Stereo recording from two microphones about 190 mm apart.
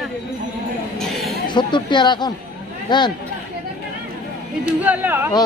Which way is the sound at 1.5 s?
25° left (ahead or behind).